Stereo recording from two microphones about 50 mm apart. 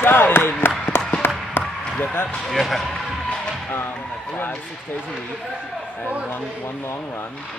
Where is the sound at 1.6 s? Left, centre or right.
Left.